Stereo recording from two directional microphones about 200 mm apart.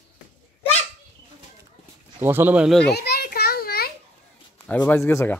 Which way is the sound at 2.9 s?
55° left (ahead or behind).